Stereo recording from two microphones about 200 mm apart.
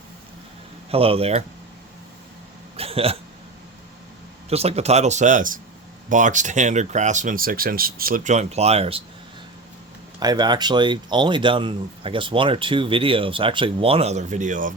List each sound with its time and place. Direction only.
0.9 s speech: 30° right (ahead or behind)
2.7 s hiccup: 30° right (ahead or behind)
4.4 s speech: 30° right (ahead or behind)
10.2 s speech: 20° right (ahead or behind); by 14.7 s 40° right (ahead or behind)